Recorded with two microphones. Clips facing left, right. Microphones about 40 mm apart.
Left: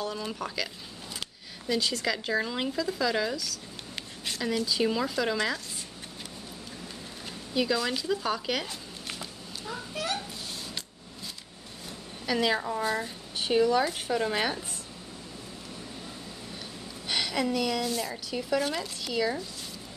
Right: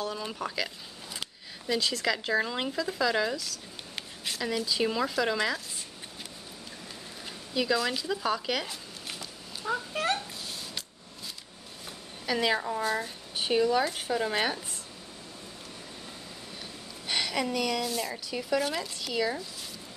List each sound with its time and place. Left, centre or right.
0.0 s speech: centre
1.7 s speech: centre
7.5 s speech: centre
9.7 s a child's voice: right
12.3 s a woman's voice: centre
17.1 s a woman's voice: centre